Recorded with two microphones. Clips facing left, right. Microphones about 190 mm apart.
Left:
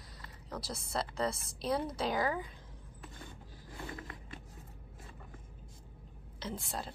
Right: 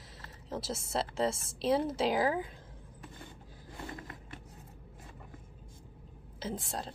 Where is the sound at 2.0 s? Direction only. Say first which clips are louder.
Right 3 dB; 5° right (ahead or behind).